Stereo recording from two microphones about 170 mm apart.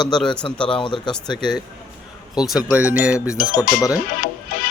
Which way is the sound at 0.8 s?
30° left (ahead or behind).